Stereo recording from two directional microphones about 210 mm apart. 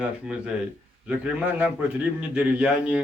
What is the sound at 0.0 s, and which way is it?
A man's voice, 5° right (ahead or behind).